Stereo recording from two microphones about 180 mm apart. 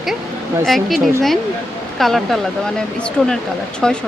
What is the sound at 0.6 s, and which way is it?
Speech, centre (ahead or behind).